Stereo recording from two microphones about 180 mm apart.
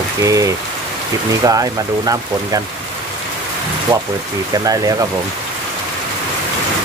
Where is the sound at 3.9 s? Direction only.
20° right (ahead or behind).